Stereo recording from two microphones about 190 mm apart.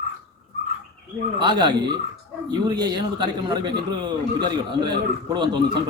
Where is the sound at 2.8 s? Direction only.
25° right (ahead or behind).